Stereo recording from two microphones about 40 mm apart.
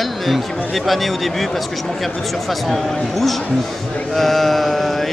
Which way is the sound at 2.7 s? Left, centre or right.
Centre.